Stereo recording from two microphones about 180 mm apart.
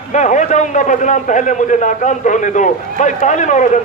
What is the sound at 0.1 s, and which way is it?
A man's voice, 40° left (ahead or behind).